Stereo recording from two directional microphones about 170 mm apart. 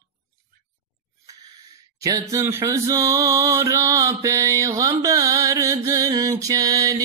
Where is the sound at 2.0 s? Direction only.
20° right (ahead or behind).